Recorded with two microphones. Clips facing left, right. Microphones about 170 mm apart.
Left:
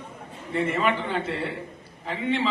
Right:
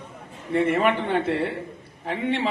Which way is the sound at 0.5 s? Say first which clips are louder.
Right 4 dB; 60° right (ahead or behind).